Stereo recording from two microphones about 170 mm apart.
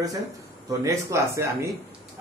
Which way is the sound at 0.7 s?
15° right (ahead or behind).